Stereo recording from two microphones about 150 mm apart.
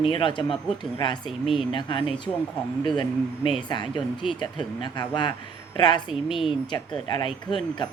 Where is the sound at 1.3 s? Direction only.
Centre (ahead or behind).